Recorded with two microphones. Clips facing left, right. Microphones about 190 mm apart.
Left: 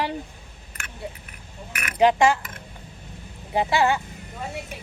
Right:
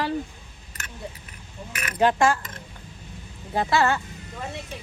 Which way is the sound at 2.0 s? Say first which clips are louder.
Left 3 dB; 15° left (ahead or behind).